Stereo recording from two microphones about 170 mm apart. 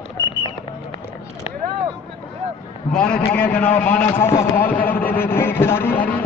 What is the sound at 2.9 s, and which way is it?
A man's voice, 5° left (ahead or behind).